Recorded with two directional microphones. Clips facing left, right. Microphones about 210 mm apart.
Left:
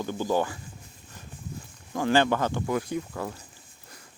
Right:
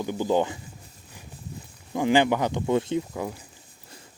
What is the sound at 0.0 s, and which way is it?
Speech, 15° right (ahead or behind).